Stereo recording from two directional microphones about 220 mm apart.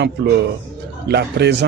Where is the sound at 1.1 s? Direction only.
50° right (ahead or behind).